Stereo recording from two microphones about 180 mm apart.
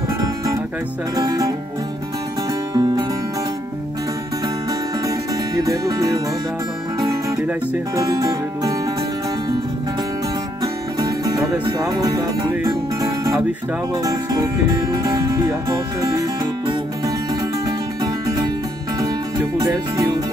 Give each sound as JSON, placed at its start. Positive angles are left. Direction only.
{"t": 1.1, "sound": "speech", "side_deg": -20}
{"t": 2.7, "sound": "music", "side_deg": -20}
{"t": 5.6, "sound": "speech", "side_deg": -20}
{"t": 7.2, "sound": "speech", "side_deg": -20}
{"t": 12.0, "sound": "music", "side_deg": -20}
{"t": 14.0, "sound": "speech", "side_deg": -20}
{"t": 16.0, "sound": "music", "side_deg": -20}
{"t": 18.9, "sound": "music", "side_deg": -20}